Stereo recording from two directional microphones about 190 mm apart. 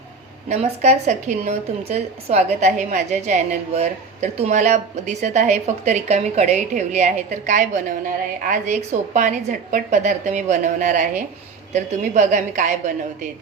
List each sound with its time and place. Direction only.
0.4 s a woman's voice: 35° right (ahead or behind)